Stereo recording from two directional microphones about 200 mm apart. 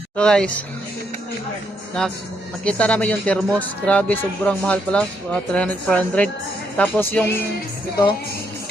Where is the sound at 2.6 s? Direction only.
5° left (ahead or behind).